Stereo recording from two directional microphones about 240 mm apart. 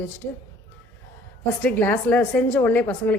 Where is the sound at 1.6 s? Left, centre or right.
Centre.